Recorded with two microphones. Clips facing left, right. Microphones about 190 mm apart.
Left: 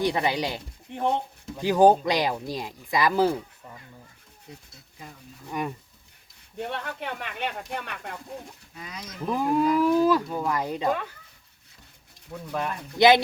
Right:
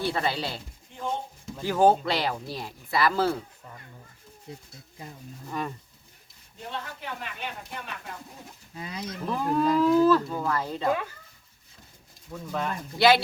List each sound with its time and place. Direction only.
0.0 s speech: 15° left (ahead or behind)
0.9 s speech: 65° left (ahead or behind)
1.5 s speech: 15° left (ahead or behind)
4.5 s speech: 30° right (ahead or behind)
5.5 s speech: 15° left (ahead or behind)
6.6 s speech: 65° left (ahead or behind)
8.8 s speech: 30° right (ahead or behind)
9.2 s speech: 15° left (ahead or behind)
12.3 s speech: 5° left (ahead or behind)
13.0 s speech: 20° left (ahead or behind)